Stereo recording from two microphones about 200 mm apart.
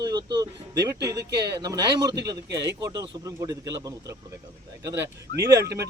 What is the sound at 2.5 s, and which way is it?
Speech, 60° right (ahead or behind).